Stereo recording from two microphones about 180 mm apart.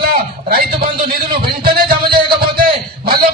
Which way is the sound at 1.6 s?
55° right (ahead or behind).